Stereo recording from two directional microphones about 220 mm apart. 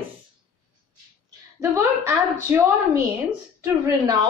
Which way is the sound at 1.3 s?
15° right (ahead or behind).